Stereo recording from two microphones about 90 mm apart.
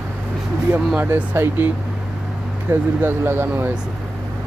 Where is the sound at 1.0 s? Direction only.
20° right (ahead or behind).